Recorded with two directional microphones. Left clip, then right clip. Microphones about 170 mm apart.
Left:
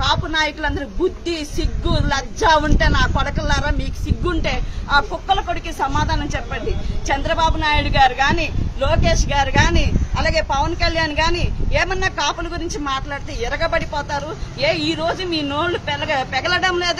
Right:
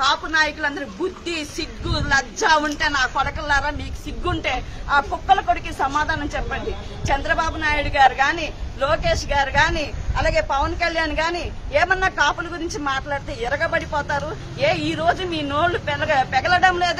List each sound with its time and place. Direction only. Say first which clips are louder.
0.6 s a woman's voice: left 1 dB; 35° left (ahead or behind)
1.6 s a man's voice: left 3 dB; 10° left (ahead or behind)